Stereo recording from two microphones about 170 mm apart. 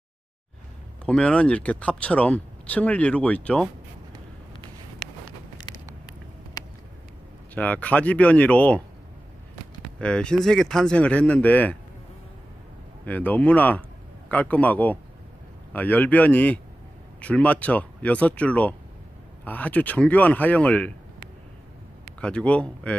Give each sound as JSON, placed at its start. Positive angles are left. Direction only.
{"t": 1.0, "sound": "speech", "side_deg": 5}
{"t": 6.6, "sound": "a sound", "side_deg": 20}
{"t": 7.5, "sound": "speech", "side_deg": 10}
{"t": 9.9, "sound": "speech", "side_deg": 5}
{"t": 13.0, "sound": "speech", "side_deg": 10}
{"t": 22.2, "sound": "speech", "side_deg": 5}